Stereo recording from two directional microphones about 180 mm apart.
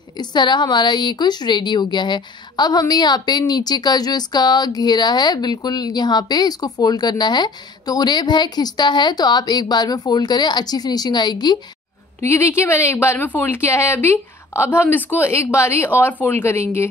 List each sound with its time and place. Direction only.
0.2 s a woman's voice: 25° left (ahead or behind)